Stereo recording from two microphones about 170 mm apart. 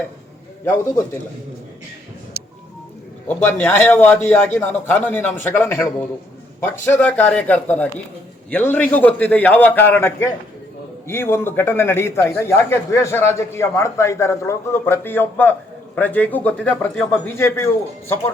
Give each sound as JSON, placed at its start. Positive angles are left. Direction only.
{"t": 0.6, "sound": "a man's voice", "side_deg": 15}
{"t": 3.2, "sound": "a man's voice", "side_deg": 10}
{"t": 7.0, "sound": "a man's voice", "side_deg": 10}